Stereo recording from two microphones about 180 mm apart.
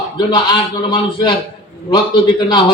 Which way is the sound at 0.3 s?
25° left (ahead or behind).